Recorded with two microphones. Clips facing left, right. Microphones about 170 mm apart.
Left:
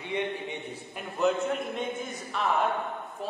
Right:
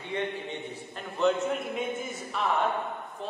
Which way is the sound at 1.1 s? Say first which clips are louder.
Even; centre (ahead or behind).